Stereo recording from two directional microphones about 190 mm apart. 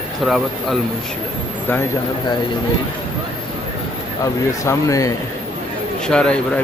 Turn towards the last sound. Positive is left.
turn(degrees=5)  # may be behind; listen again after turning